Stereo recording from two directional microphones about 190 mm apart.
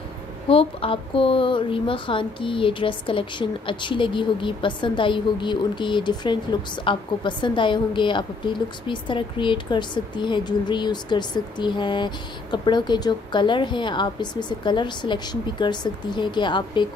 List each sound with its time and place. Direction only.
0.5 s a woman's voice: 30° left (ahead or behind)